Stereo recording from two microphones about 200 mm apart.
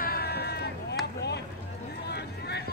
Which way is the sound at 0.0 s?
50° left (ahead or behind).